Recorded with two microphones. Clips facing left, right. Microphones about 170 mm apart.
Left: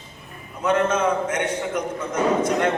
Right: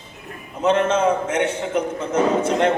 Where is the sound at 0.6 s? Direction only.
25° right (ahead or behind).